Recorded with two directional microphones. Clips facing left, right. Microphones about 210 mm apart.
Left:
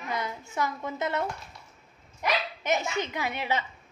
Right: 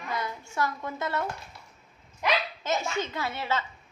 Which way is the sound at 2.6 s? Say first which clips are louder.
Left 2 dB; 20° left (ahead or behind).